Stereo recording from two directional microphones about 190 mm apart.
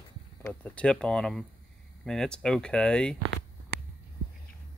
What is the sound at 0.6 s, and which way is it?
Speech, 5° left (ahead or behind).